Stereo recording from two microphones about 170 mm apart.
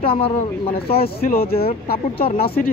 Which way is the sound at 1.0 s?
65° left (ahead or behind).